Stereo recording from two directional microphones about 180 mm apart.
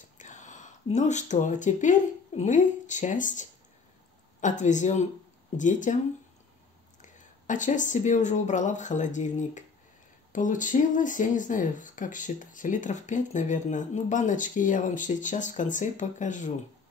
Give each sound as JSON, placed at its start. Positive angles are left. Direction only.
{"t": 0.2, "sound": "speech", "side_deg": 45}
{"t": 7.0, "sound": "speech", "side_deg": 45}